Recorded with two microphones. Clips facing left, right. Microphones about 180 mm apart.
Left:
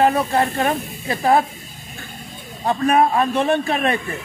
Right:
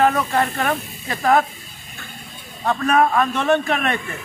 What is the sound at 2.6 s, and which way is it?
A man's voice, 30° left (ahead or behind).